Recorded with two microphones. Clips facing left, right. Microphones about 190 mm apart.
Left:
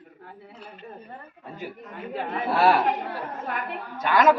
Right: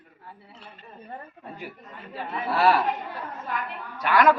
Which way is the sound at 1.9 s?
60° left (ahead or behind).